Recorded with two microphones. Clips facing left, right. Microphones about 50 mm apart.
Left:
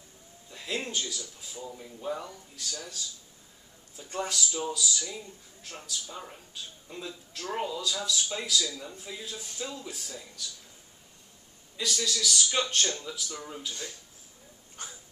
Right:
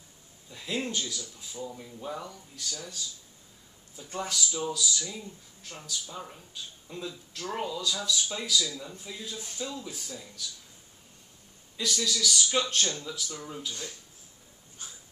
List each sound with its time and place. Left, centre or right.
0.5 s speech: centre
4.0 s speech: centre
11.7 s speech: centre
14.8 s crying: left